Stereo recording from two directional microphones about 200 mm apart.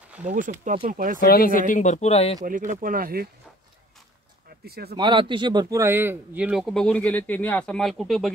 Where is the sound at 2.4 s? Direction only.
45° right (ahead or behind).